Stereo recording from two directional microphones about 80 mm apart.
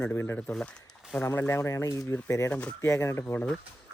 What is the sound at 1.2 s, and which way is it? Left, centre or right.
Speech, left.